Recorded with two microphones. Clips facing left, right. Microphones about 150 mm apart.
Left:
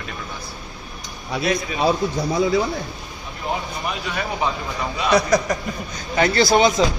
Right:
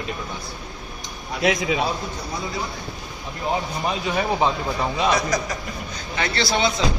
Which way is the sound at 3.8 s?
25° right (ahead or behind).